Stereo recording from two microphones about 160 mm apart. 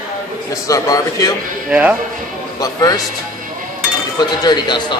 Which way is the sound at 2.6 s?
20° left (ahead or behind).